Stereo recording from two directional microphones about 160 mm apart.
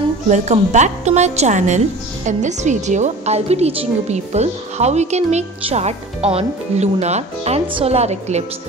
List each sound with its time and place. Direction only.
0.3 s a woman's voice: 45° right (ahead or behind)